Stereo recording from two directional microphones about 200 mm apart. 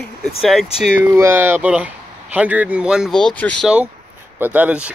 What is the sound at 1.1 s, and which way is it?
Speech, 10° right (ahead or behind).